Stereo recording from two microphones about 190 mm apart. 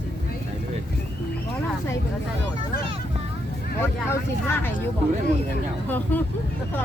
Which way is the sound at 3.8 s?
10° left (ahead or behind).